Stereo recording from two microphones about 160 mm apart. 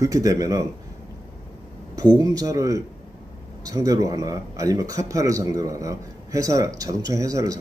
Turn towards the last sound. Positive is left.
turn(degrees=-20)  # may be behind; listen again after turning